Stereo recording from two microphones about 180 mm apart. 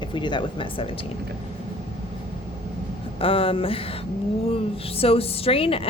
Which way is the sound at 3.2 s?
30° left (ahead or behind).